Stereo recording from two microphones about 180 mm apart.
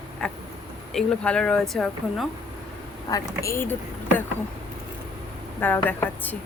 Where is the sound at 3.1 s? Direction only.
20° left (ahead or behind).